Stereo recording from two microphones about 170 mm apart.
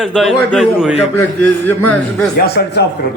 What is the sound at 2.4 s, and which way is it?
Speech, 70° left (ahead or behind).